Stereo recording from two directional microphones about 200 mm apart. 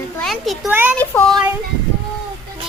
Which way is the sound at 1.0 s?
10° left (ahead or behind).